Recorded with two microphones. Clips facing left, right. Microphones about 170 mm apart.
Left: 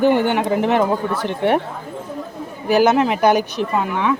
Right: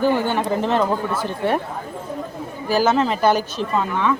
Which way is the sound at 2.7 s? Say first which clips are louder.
Left 3 dB; 15° left (ahead or behind).